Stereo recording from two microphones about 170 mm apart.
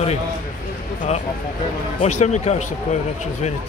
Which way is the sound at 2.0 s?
45° left (ahead or behind).